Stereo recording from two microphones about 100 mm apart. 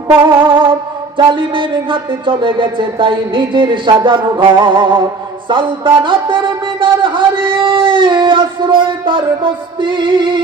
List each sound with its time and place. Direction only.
0.4 s mantra: 55° right (ahead or behind)
5.5 s music: 55° right (ahead or behind)